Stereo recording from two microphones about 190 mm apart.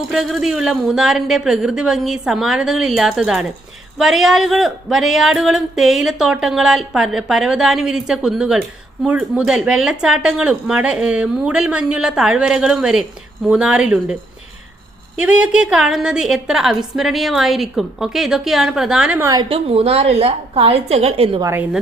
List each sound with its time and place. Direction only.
0.1 s speech: centre (ahead or behind)
15.2 s speech: 5° right (ahead or behind)
19.2 s a woman's voice: 20° right (ahead or behind)
19.5 s a woman's voice: 30° right (ahead or behind)
21.4 s a woman's voice: 10° right (ahead or behind)